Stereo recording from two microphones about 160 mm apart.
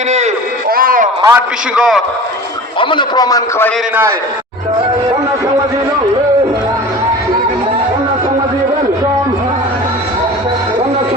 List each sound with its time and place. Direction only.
0.7 s a sound: 65° right (ahead or behind)
1.2 s a man's voice: 15° right (ahead or behind)
2.8 s a man's voice: 30° left (ahead or behind)